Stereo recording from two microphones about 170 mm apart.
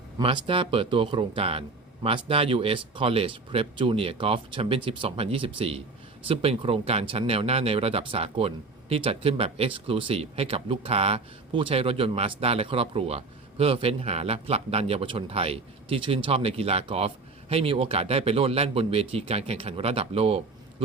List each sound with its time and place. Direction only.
0.2 s speech: 30° right (ahead or behind)